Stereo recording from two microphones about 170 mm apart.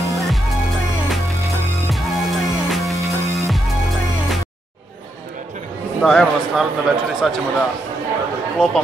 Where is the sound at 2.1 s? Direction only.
Centre (ahead or behind).